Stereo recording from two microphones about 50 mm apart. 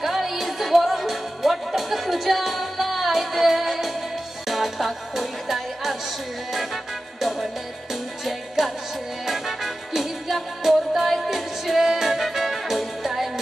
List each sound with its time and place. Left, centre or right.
0.0 s music: centre